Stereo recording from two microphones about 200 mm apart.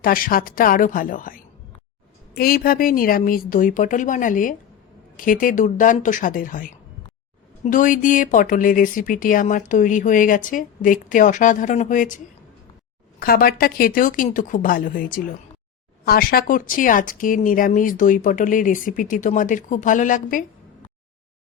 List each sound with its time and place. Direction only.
0.0 s a woman's voice: 45° left (ahead or behind)